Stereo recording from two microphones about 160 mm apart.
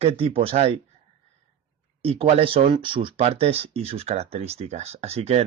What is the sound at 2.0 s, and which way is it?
Speech, 40° right (ahead or behind).